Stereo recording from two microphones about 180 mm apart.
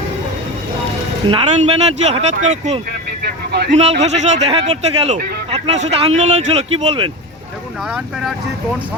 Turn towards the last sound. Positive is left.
turn(degrees=-30)  # may be behind; listen again after turning